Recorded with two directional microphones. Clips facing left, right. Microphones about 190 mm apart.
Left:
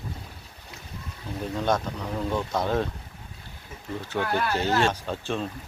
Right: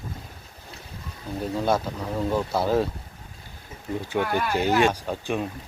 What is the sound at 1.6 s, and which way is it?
Speech, 5° right (ahead or behind).